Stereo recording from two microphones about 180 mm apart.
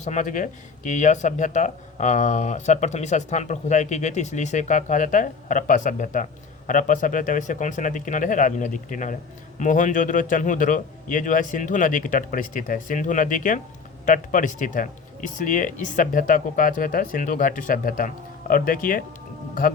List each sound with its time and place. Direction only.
0.0 s a man's voice: 45° left (ahead or behind)